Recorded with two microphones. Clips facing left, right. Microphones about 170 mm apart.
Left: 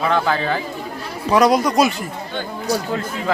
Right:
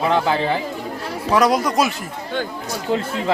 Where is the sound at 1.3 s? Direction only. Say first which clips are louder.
Left 2 dB; centre (ahead or behind).